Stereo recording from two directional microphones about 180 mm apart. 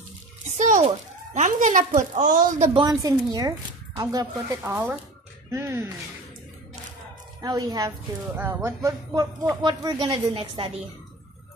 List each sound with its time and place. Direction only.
0.6 s a child's voice: 40° right (ahead or behind)
2.7 s speech: 20° right (ahead or behind)
7.4 s speech: 20° right (ahead or behind)